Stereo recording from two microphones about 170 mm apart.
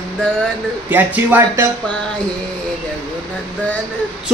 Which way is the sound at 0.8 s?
10° right (ahead or behind).